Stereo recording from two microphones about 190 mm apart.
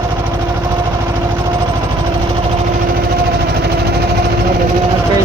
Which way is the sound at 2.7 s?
50° right (ahead or behind).